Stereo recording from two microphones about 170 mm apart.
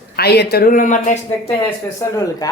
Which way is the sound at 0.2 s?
70° left (ahead or behind).